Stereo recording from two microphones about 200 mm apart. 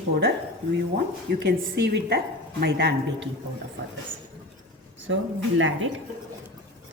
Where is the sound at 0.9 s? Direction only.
55° right (ahead or behind).